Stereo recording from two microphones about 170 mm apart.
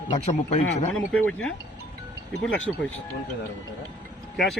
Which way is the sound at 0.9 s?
5° left (ahead or behind).